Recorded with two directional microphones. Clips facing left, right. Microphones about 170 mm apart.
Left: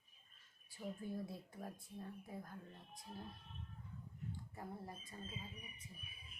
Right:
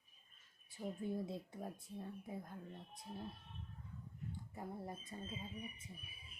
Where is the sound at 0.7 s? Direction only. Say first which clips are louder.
Right 3 dB; 25° right (ahead or behind).